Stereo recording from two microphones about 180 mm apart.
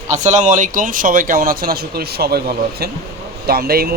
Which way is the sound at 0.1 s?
40° right (ahead or behind).